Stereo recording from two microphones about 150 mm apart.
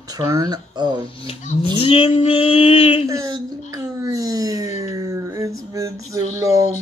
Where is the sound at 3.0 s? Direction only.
25° right (ahead or behind).